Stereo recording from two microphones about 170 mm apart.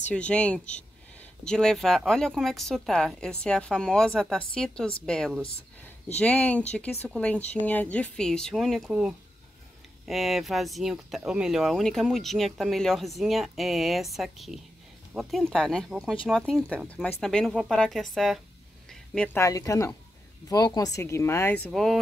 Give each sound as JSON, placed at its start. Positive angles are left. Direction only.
{"t": 0.1, "sound": "speech", "side_deg": 5}
{"t": 18.9, "sound": "a sound", "side_deg": 5}
{"t": 19.4, "sound": "speech", "side_deg": 20}